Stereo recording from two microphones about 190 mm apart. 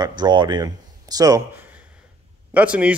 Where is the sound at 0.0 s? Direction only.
20° right (ahead or behind).